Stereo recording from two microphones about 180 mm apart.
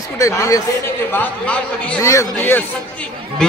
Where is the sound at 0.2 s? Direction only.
15° left (ahead or behind).